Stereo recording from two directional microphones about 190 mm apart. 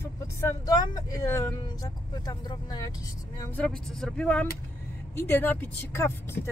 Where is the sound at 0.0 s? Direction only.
15° left (ahead or behind).